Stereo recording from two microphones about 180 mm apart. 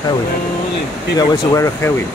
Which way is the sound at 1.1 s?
15° left (ahead or behind).